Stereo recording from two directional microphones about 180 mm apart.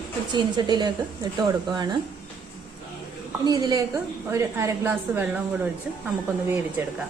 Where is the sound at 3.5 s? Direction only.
20° right (ahead or behind).